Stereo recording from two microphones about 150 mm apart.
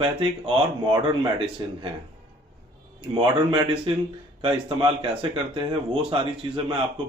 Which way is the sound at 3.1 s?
30° right (ahead or behind).